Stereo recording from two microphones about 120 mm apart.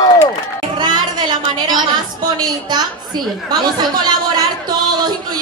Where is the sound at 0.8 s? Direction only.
40° right (ahead or behind).